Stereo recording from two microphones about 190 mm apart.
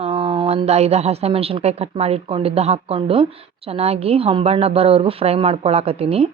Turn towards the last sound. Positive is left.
turn(degrees=-30)  # may be behind; listen again after turning